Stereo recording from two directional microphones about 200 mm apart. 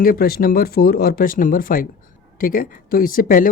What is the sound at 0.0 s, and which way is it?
Speech, 45° left (ahead or behind).